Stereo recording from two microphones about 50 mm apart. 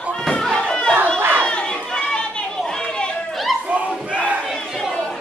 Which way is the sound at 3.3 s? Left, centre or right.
Centre.